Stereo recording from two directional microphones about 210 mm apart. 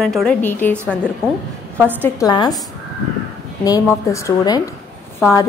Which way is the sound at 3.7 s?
15° left (ahead or behind).